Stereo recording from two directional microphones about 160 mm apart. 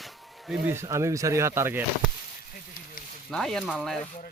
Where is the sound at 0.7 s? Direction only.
15° right (ahead or behind).